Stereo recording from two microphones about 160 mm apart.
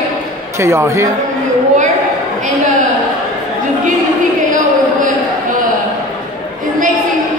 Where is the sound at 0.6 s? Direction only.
15° right (ahead or behind).